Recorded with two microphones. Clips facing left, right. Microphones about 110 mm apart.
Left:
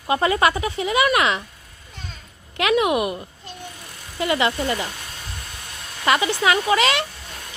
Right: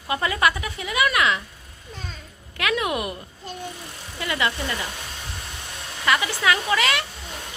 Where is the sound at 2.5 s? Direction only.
20° left (ahead or behind).